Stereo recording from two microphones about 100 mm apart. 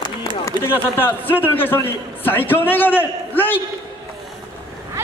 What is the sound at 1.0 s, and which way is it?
A man's voice, 20° left (ahead or behind).